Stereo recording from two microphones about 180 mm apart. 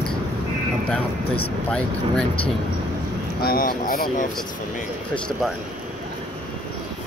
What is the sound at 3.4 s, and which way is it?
Speech, 55° left (ahead or behind).